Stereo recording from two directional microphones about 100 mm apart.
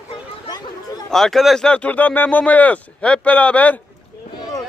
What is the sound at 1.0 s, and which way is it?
Speech, 5° left (ahead or behind).